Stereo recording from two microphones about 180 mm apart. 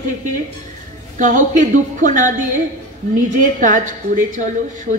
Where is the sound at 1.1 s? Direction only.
45° right (ahead or behind).